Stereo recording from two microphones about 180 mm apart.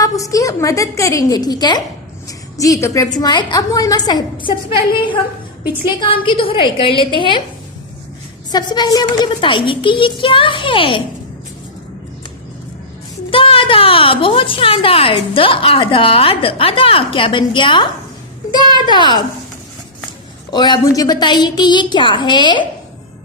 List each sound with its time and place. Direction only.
0.0 s a woman's voice: 20° left (ahead or behind)
6.0 s a woman's voice: 30° left (ahead or behind)
8.5 s a woman's voice: 25° left (ahead or behind)
13.3 s a woman's voice: 30° left (ahead or behind)
18.9 s a woman's voice: 25° left (ahead or behind)
20.5 s a woman's voice: 25° left (ahead or behind)